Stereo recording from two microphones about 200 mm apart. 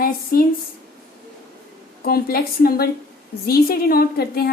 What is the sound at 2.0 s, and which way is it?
A woman's voice, 50° left (ahead or behind).